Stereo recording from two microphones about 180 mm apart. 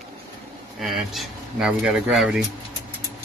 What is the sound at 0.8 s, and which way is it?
Speech, centre (ahead or behind).